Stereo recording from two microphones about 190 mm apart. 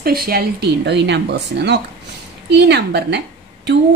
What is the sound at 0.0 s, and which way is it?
A woman's voice, 55° right (ahead or behind).